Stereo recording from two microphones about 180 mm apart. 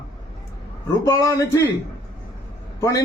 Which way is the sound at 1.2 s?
15° left (ahead or behind).